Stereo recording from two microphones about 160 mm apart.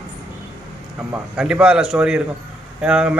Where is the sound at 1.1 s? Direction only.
5° right (ahead or behind).